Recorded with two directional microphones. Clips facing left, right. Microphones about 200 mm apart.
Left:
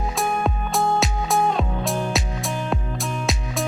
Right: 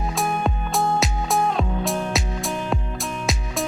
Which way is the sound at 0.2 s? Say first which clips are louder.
Left 1 dB; centre (ahead or behind).